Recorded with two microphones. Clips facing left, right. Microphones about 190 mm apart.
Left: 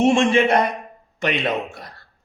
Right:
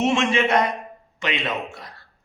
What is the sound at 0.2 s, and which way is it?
Speech, 30° left (ahead or behind).